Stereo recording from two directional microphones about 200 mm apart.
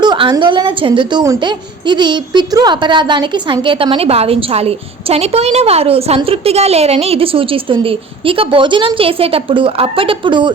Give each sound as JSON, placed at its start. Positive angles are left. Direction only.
{"t": 0.0, "sound": "a woman's voice", "side_deg": -20}